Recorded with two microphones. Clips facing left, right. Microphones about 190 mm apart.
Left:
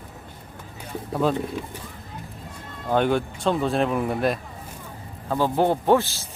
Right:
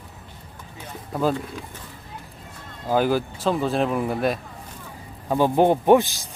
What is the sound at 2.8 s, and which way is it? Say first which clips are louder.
Speech: even; 5° right (ahead or behind).